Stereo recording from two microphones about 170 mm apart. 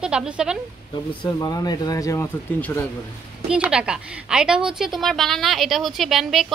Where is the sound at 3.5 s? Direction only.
5° right (ahead or behind).